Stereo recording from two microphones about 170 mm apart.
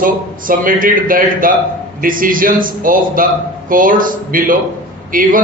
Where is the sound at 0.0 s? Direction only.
55° right (ahead or behind).